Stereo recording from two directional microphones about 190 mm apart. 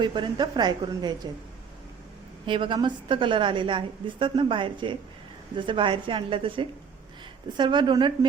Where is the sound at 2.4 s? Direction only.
25° right (ahead or behind).